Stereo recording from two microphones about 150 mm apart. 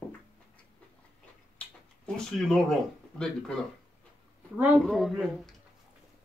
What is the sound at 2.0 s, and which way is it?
Speech, 5° left (ahead or behind).